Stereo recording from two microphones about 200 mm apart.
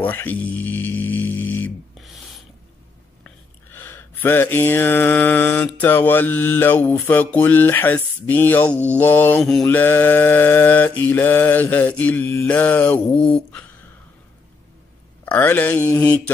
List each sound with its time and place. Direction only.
0.0 s music: 10° left (ahead or behind)
3.3 s mantra: 10° left (ahead or behind)
15.2 s mantra: 10° left (ahead or behind)